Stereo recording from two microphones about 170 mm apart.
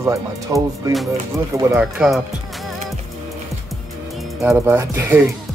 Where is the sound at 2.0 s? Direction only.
Centre (ahead or behind).